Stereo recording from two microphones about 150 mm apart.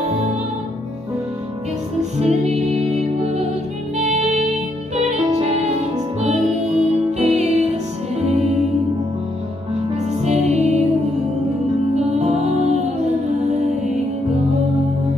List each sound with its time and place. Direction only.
2.0 s music: 50° right (ahead or behind)
10.2 s music: 50° right (ahead or behind)
11.9 s music: 50° right (ahead or behind)